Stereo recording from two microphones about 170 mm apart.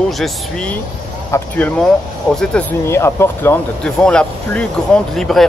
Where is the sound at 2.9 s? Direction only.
15° left (ahead or behind).